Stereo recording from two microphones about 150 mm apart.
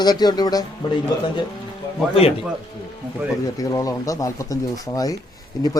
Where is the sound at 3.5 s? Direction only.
25° left (ahead or behind).